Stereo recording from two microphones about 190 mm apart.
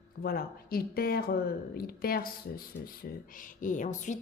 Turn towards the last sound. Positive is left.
turn(degrees=40)  # may be behind; listen again after turning